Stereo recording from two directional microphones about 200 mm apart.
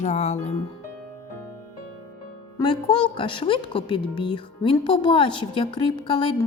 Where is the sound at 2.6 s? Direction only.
20° left (ahead or behind).